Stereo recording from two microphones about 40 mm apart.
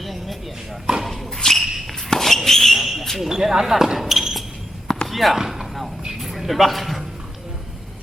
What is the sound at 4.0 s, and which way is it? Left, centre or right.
Basketball bounce, centre.